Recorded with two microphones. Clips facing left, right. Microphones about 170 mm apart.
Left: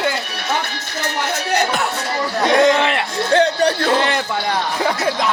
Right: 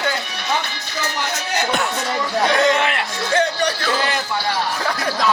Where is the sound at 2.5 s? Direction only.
25° left (ahead or behind).